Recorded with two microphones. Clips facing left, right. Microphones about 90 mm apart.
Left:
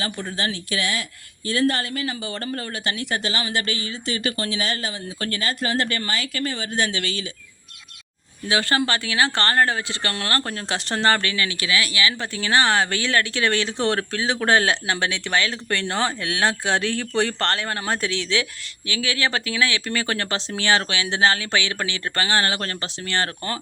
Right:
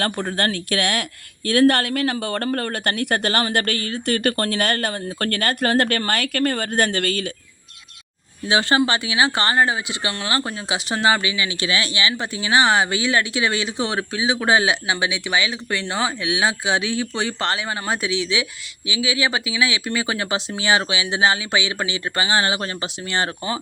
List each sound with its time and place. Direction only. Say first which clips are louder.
0.0 s speech: right 5 dB; 55° right (ahead or behind)
8.4 s speech: right 3 dB; 20° right (ahead or behind)
11.5 s speech: right 1 dB; 25° right (ahead or behind)